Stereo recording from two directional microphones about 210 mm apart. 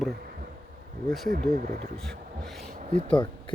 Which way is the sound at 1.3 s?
40° right (ahead or behind).